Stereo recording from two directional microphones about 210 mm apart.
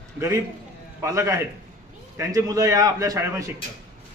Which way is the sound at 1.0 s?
15° right (ahead or behind).